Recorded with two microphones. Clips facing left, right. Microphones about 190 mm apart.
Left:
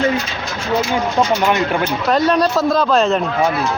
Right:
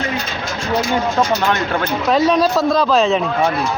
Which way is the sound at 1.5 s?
10° left (ahead or behind).